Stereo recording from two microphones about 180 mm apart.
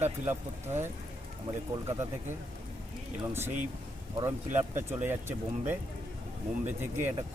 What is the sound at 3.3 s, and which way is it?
Speech, 15° right (ahead or behind).